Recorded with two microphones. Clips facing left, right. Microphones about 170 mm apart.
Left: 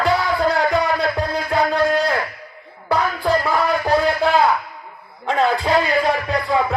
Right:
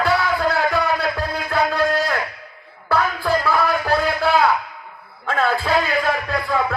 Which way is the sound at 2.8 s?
15° left (ahead or behind).